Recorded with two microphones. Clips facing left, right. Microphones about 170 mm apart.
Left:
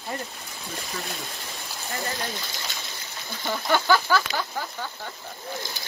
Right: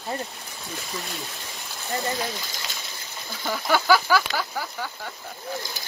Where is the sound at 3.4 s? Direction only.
5° right (ahead or behind).